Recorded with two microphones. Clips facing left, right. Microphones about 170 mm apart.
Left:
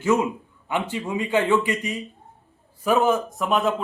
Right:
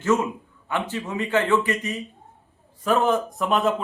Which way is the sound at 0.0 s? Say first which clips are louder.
Left 1 dB; 10° left (ahead or behind).